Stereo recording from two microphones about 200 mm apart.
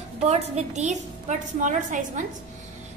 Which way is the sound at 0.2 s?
30° right (ahead or behind).